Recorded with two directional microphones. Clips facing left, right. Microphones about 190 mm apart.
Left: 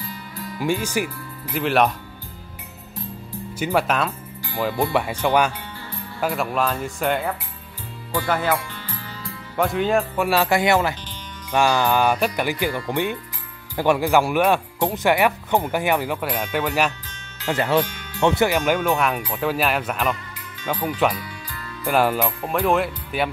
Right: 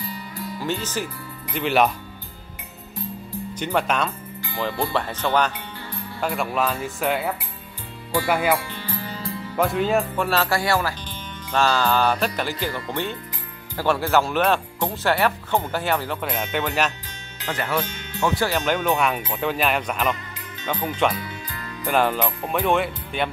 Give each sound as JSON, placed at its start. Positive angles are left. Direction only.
{"t": 0.6, "sound": "speech", "side_deg": 10}
{"t": 3.5, "sound": "speech", "side_deg": 5}
{"t": 6.2, "sound": "speech", "side_deg": 0}
{"t": 9.6, "sound": "speech", "side_deg": 0}
{"t": 10.2, "sound": "speech", "side_deg": 15}
{"t": 17.5, "sound": "speech", "side_deg": 25}
{"t": 17.8, "sound": "music", "side_deg": -25}
{"t": 18.2, "sound": "speech", "side_deg": 20}
{"t": 18.7, "sound": "speech", "side_deg": 0}
{"t": 21.1, "sound": "music", "side_deg": -25}
{"t": 21.8, "sound": "speech", "side_deg": 5}